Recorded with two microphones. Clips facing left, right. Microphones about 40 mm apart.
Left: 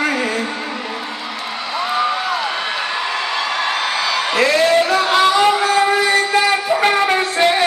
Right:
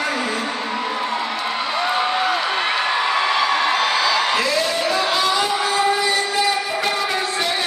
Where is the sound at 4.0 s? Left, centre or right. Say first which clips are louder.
Right 1 dB; centre.